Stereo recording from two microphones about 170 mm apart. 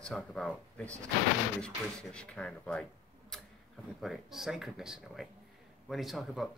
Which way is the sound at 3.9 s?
Centre (ahead or behind).